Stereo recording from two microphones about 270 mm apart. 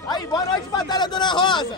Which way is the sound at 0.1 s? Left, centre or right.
Centre.